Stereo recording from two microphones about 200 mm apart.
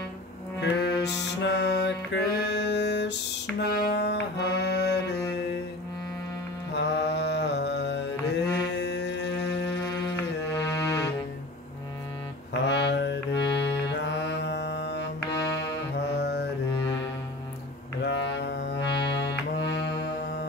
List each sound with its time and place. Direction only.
0.6 s music: 55° left (ahead or behind)
6.7 s mantra: 55° left (ahead or behind)
10.7 s music: 15° left (ahead or behind)
12.6 s a sound: 60° left (ahead or behind)
13.7 s music: 60° left (ahead or behind)
18.0 s music: 65° left (ahead or behind)